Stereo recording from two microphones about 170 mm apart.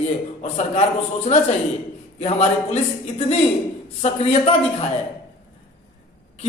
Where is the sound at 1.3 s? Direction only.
40° left (ahead or behind).